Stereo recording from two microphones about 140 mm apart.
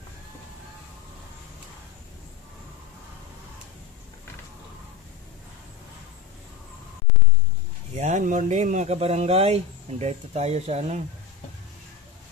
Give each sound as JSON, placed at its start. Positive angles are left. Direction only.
{"t": 7.9, "sound": "speech", "side_deg": -55}